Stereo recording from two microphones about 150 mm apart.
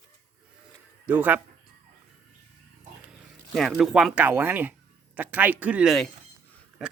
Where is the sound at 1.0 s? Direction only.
10° right (ahead or behind).